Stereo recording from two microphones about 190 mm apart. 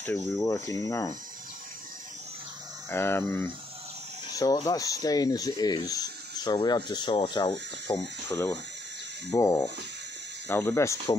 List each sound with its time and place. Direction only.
0.0 s speech: 15° left (ahead or behind)
2.9 s speech: 10° left (ahead or behind)